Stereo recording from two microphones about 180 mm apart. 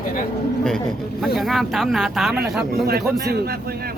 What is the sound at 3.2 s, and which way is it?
Speech, 65° right (ahead or behind).